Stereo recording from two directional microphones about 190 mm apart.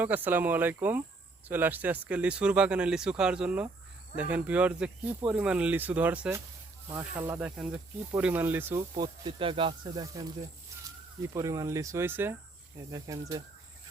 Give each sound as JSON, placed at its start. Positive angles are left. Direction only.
{"t": 0.0, "sound": "speech", "side_deg": -10}
{"t": 9.0, "sound": "speech", "side_deg": -25}
{"t": 11.3, "sound": "speech", "side_deg": -15}